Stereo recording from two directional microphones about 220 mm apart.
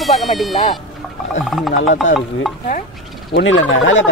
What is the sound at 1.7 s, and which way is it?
Speech, 65° left (ahead or behind).